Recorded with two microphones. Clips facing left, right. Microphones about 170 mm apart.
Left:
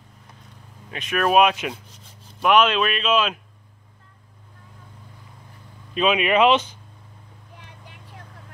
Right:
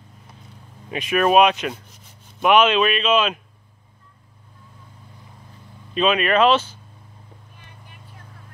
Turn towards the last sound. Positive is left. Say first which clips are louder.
# left 2 dB
turn(degrees=90)